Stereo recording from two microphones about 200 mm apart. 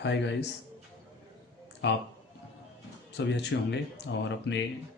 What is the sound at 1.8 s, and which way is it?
Speech, 60° left (ahead or behind).